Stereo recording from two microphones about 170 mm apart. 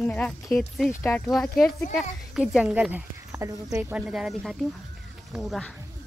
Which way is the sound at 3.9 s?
5° right (ahead or behind).